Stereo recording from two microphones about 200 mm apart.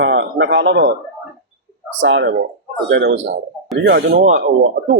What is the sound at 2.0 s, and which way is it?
Speech, 65° right (ahead or behind).